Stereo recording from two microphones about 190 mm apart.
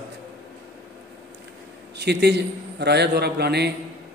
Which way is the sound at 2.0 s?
60° right (ahead or behind).